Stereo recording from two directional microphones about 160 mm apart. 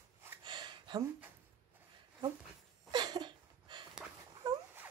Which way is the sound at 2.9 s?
25° right (ahead or behind).